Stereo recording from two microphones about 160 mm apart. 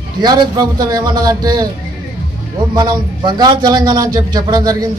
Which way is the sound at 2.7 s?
25° right (ahead or behind).